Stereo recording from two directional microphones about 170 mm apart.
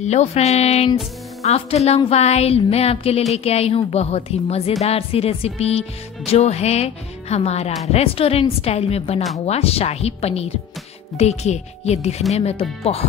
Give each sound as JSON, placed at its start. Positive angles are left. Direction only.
{"t": 0.0, "sound": "speech", "side_deg": 40}